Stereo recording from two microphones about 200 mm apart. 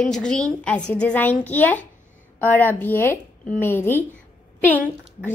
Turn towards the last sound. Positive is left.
turn(degrees=10)  # may be behind; listen again after turning